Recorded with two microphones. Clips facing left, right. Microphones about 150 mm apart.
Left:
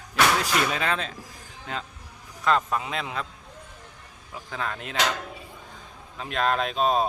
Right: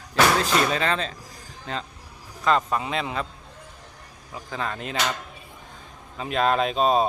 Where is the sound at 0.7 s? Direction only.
5° left (ahead or behind).